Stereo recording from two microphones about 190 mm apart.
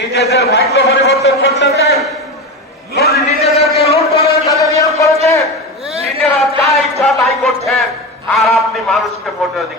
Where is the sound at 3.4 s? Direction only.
35° left (ahead or behind).